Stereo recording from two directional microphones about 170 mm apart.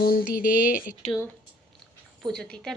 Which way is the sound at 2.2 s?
5° left (ahead or behind).